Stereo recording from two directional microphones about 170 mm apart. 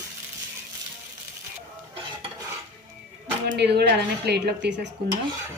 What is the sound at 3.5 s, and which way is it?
A woman's voice, 80° right.